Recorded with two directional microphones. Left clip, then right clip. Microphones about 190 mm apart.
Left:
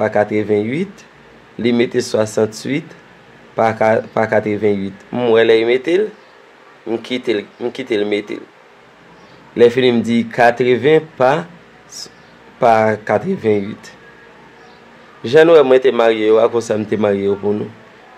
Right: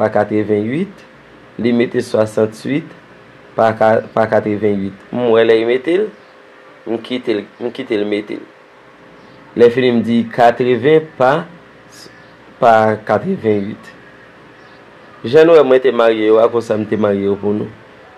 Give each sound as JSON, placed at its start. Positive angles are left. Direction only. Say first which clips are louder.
{"t": 0.0, "sound": "speech", "louder": "right 1 dB", "side_deg": 10}
{"t": 9.5, "sound": "speech", "louder": "right 1 dB", "side_deg": 15}
{"t": 12.5, "sound": "speech", "louder": "right 2 dB", "side_deg": 15}
{"t": 15.2, "sound": "speech", "louder": "right 1 dB", "side_deg": 15}